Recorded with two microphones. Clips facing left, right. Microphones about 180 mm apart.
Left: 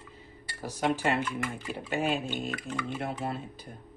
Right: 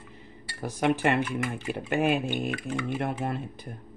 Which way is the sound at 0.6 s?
60° right (ahead or behind).